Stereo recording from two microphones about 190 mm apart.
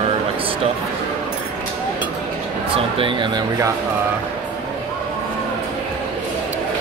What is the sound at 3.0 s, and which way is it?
Speech, 25° right (ahead or behind).